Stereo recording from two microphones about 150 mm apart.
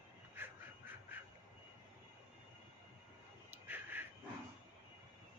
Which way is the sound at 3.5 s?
15° right (ahead or behind).